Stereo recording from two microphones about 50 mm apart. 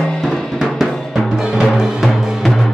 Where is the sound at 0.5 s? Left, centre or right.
Centre.